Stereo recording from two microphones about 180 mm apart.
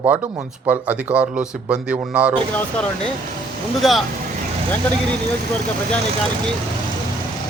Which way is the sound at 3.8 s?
Centre (ahead or behind).